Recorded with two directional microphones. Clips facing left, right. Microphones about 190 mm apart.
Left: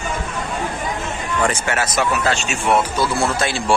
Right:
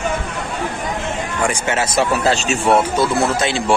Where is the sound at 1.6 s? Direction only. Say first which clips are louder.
Right 2 dB; 25° right (ahead or behind).